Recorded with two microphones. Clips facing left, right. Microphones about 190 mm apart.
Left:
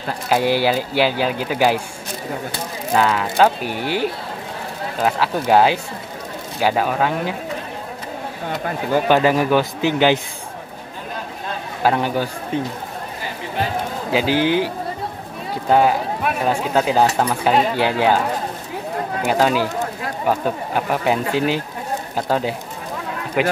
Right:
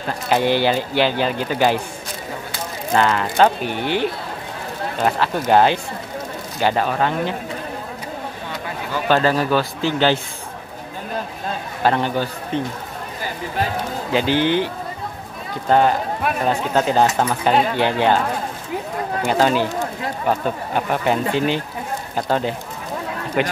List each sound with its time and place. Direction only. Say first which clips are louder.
0.3 s speech: even; 5° left (ahead or behind)
2.9 s speech: even; 5° left (ahead or behind)
5.5 s a man's voice: even; 5° left (ahead or behind)
8.5 s speech: left 9 dB; 50° left (ahead or behind)
9.0 s a man's voice: even; 15° left (ahead or behind)
11.8 s a man's voice: even; 5° left (ahead or behind)
14.1 s a man's voice: even; 5° left (ahead or behind)
15.7 s a man's voice: even; 5° left (ahead or behind)
19.2 s speech: even; centre (ahead or behind)